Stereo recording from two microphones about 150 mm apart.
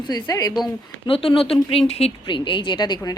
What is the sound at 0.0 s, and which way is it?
Speech, 30° left (ahead or behind).